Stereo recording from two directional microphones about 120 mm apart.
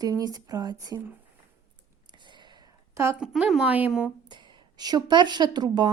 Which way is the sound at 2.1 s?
40° right (ahead or behind).